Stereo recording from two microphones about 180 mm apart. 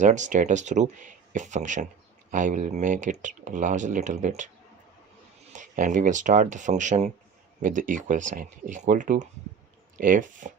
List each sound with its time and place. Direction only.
0.0 s speech: 40° right (ahead or behind)
5.5 s speech: 45° right (ahead or behind)